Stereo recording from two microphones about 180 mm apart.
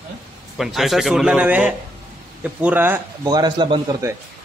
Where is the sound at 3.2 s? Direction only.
25° right (ahead or behind).